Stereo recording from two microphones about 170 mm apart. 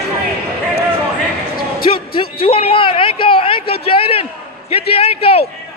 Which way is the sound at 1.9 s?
30° left (ahead or behind).